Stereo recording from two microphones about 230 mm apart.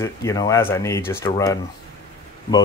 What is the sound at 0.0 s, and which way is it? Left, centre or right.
Speech, centre.